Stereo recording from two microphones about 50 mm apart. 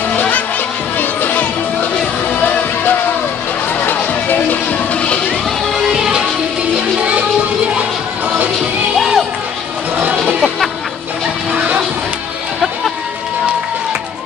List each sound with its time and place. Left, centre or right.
0.9 s music: left
3.8 s music: left
4.9 s music: left
5.8 s music: centre
8.9 s music: centre
9.9 s music: right